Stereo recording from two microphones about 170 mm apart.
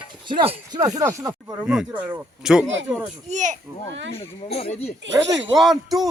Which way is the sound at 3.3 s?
45° right (ahead or behind).